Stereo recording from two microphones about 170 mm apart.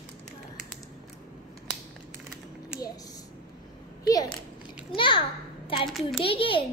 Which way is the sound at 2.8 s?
20° left (ahead or behind).